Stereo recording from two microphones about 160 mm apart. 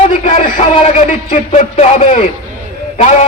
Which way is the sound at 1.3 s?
45° left (ahead or behind).